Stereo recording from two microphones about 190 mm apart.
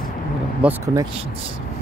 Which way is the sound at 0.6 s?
5° right (ahead or behind).